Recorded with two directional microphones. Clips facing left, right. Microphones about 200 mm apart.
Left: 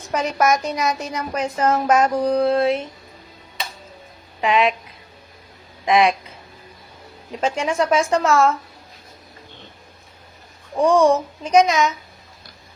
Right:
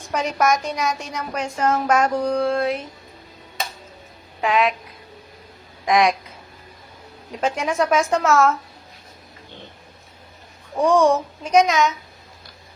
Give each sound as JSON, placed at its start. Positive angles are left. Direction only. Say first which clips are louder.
{"t": 0.1, "sound": "speech", "louder": "left 1 dB", "side_deg": 0}
{"t": 2.2, "sound": "mantra", "louder": "left 3 dB", "side_deg": 35}
{"t": 4.4, "sound": "a woman's voice", "louder": "left 1 dB", "side_deg": 0}
{"t": 5.8, "sound": "speech", "louder": "left 1 dB", "side_deg": 0}
{"t": 7.4, "sound": "speech", "louder": "left 1 dB", "side_deg": 0}
{"t": 10.8, "sound": "speech", "louder": "left 1 dB", "side_deg": 0}